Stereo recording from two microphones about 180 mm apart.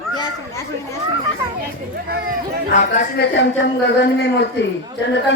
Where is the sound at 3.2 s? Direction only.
75° left (ahead or behind).